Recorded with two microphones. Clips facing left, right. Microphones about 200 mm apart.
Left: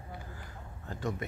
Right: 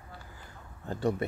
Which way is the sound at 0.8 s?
30° right (ahead or behind).